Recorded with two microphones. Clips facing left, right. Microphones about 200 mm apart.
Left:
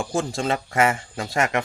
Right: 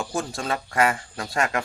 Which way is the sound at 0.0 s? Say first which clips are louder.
Left 4 dB; 25° left (ahead or behind).